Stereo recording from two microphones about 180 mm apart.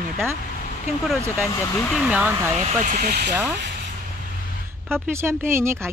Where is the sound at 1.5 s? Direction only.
15° left (ahead or behind).